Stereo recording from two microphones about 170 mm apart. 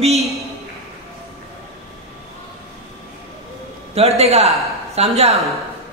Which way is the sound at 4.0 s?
35° right (ahead or behind).